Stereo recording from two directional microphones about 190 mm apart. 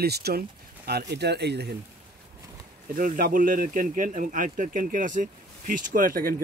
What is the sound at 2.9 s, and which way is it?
Speech, 45° right (ahead or behind).